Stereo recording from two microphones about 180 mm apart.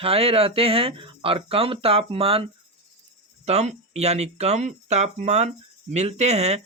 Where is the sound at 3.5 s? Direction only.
35° right (ahead or behind).